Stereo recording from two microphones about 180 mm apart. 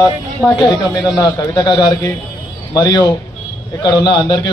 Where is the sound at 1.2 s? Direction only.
20° left (ahead or behind).